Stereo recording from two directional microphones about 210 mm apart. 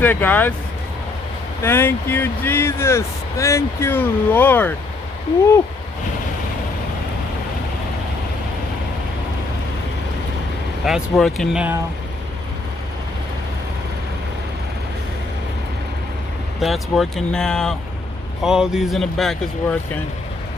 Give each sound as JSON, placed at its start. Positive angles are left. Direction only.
{"t": 0.0, "sound": "speech", "side_deg": 10}
{"t": 1.6, "sound": "speech", "side_deg": 10}
{"t": 10.9, "sound": "speech", "side_deg": 0}
{"t": 16.6, "sound": "speech", "side_deg": 0}